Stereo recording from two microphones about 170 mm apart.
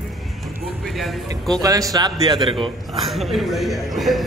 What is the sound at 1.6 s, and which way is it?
A man's voice, 20° right (ahead or behind).